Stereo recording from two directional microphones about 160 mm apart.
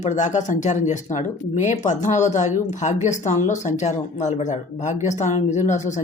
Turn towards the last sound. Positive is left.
turn(degrees=50)  # may be behind; listen again after turning